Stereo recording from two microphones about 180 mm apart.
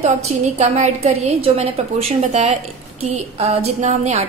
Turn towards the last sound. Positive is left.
turn(degrees=-40)  # may be behind; listen again after turning